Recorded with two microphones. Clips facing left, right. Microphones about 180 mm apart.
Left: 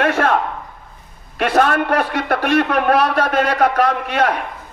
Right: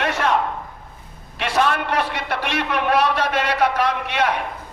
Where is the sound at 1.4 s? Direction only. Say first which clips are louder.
Left 5 dB; 50° left (ahead or behind).